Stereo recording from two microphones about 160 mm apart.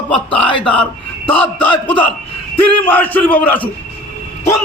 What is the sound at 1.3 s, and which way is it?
Speech, 10° left (ahead or behind).